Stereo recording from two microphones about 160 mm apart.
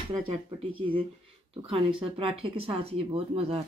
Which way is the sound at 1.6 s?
35° right (ahead or behind).